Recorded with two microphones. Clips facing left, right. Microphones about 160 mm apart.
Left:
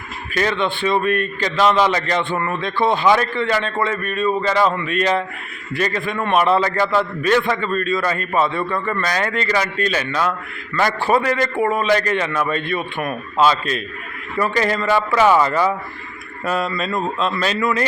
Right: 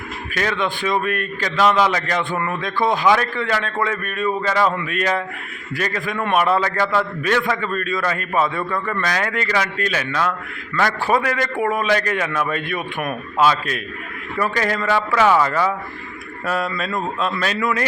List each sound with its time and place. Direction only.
0.3 s a man's voice: centre (ahead or behind)